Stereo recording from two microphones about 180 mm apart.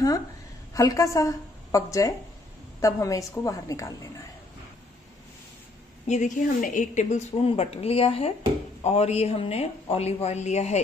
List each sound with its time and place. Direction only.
0.7 s a woman's voice: 20° left (ahead or behind)
6.0 s a woman's voice: 40° left (ahead or behind)